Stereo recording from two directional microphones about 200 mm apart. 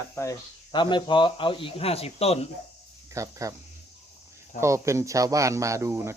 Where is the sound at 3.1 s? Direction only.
15° right (ahead or behind).